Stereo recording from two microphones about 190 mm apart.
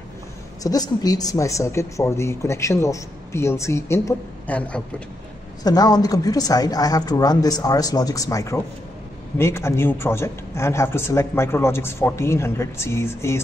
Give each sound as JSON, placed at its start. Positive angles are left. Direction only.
{"t": 0.7, "sound": "speech", "side_deg": 20}
{"t": 5.6, "sound": "a woman's voice", "side_deg": 20}